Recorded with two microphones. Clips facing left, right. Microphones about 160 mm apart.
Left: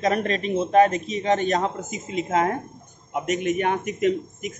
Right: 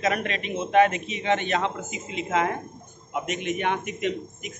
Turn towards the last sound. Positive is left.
turn(degrees=40)  # may be behind; listen again after turning